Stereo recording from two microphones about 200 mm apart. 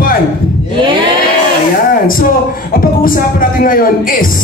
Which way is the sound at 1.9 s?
45° left (ahead or behind).